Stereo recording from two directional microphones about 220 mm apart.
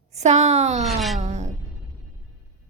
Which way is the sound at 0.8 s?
Centre (ahead or behind).